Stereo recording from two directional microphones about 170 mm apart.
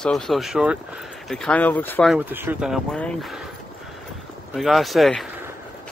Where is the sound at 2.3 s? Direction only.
10° right (ahead or behind).